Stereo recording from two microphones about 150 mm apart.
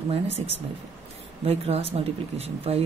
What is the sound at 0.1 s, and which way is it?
Speech, 45° right (ahead or behind).